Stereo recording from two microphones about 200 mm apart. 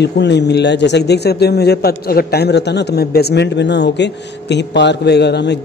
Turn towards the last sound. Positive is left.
turn(degrees=55)  # may be behind; listen again after turning